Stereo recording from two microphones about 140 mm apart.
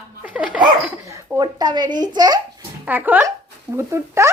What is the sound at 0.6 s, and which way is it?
Speech, 20° right (ahead or behind).